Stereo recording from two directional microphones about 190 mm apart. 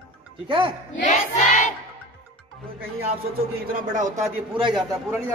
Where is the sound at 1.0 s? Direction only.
40° left (ahead or behind).